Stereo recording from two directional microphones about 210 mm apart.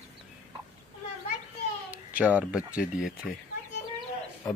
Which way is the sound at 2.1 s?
5° right (ahead or behind).